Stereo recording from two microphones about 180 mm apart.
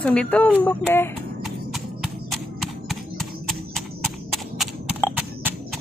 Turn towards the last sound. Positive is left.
turn(degrees=-5)  # may be behind; listen again after turning